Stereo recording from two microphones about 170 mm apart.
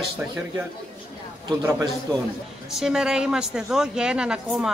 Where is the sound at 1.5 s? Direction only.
20° right (ahead or behind).